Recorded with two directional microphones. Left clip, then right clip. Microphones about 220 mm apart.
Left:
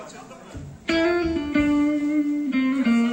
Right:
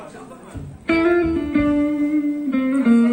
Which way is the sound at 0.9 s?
55° left (ahead or behind).